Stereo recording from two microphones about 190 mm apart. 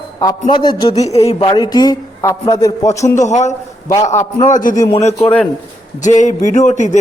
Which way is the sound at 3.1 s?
35° left (ahead or behind).